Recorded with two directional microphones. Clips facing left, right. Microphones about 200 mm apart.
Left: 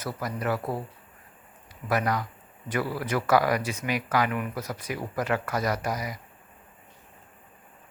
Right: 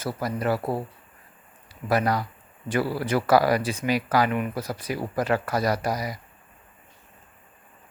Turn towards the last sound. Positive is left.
turn(degrees=-35)  # may be behind; listen again after turning